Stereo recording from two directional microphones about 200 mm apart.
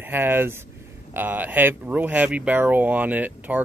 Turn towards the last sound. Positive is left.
turn(degrees=-10)  # may be behind; listen again after turning